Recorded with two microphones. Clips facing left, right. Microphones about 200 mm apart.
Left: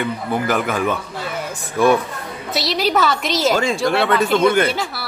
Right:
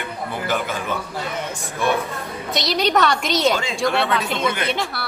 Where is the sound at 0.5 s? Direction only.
55° left (ahead or behind).